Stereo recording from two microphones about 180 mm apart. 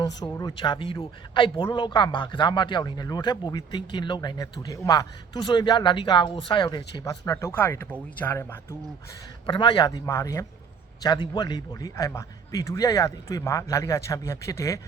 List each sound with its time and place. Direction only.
0.2 s a man's voice: 20° left (ahead or behind)
9.5 s a man's voice: 25° left (ahead or behind)